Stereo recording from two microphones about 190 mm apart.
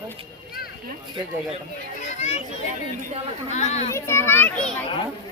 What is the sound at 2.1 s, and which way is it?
Children playing, 35° left (ahead or behind).